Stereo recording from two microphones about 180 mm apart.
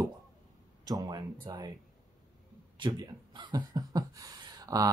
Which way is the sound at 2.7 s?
25° right (ahead or behind).